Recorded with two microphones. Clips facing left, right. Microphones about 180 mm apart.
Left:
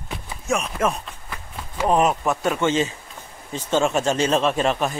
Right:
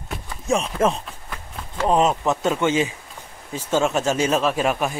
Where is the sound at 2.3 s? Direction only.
20° right (ahead or behind).